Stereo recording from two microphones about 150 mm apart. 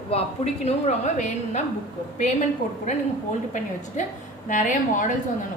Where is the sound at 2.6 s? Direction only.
60° left (ahead or behind).